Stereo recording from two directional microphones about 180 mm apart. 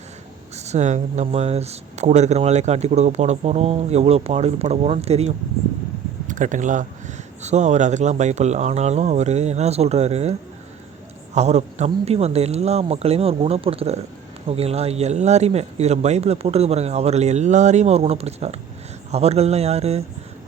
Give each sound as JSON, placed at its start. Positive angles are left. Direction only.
{"t": 0.5, "sound": "speech", "side_deg": -40}
{"t": 11.3, "sound": "speech", "side_deg": -40}